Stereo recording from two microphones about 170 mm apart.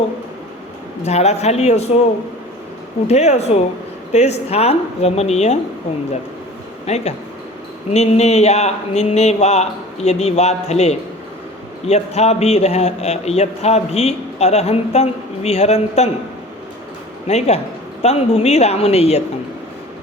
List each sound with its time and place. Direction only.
1.0 s a man's voice: 40° left (ahead or behind)
3.1 s a man's voice: 40° left (ahead or behind)
6.8 s a man's voice: 40° left (ahead or behind)
17.2 s a man's voice: 40° left (ahead or behind)